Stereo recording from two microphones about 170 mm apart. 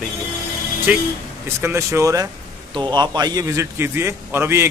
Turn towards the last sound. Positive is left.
turn(degrees=-15)  # may be behind; listen again after turning